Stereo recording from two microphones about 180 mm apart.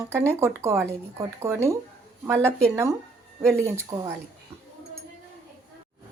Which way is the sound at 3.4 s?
15° right (ahead or behind).